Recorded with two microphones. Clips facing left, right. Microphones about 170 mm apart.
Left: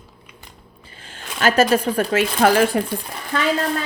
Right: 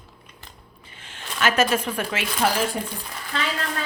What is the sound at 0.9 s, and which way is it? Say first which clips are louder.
Speech: left 2 dB; 35° left (ahead or behind).